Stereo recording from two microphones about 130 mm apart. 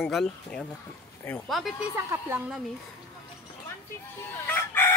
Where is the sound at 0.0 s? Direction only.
Centre (ahead or behind).